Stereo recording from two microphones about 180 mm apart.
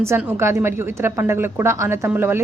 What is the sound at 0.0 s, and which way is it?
A woman's voice, 15° right (ahead or behind).